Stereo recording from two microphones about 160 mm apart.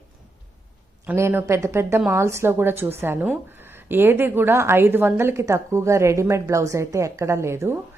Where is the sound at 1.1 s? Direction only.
15° right (ahead or behind).